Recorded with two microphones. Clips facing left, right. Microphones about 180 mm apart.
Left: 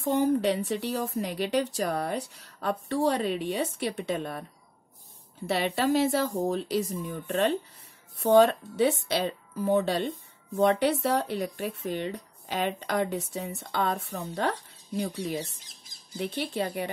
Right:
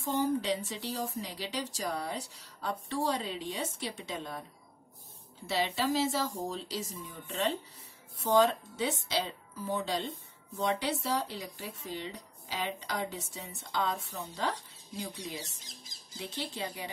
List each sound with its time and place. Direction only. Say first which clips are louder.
0.0 s speech: left 6 dB; 60° left (ahead or behind)
5.5 s speech: left 5 dB; 60° left (ahead or behind)
16.2 s speech: left 8 dB; 60° left (ahead or behind)